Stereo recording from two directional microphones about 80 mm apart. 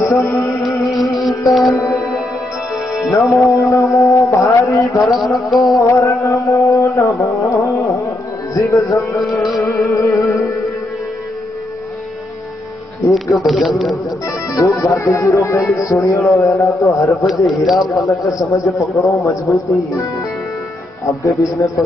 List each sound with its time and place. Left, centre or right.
0.0 s music: left
1.5 s a man's voice: centre
3.2 s a man's voice: left
5.0 s a man's voice: centre
5.8 s a man's voice: left
7.0 s carnatic music: left
8.5 s a man's voice: left
13.1 s a man's voice: centre
14.5 s a man's voice: left
17.3 s a man's voice: centre
18.0 s a man's voice: left
21.2 s a man's voice: left